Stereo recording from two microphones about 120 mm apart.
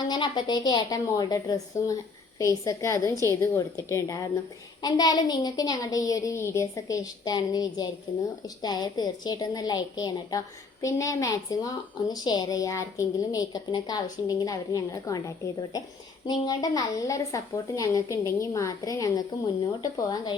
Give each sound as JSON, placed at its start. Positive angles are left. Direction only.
{"t": 0.1, "sound": "a woman's voice", "side_deg": 35}
{"t": 16.2, "sound": "a woman's voice", "side_deg": 30}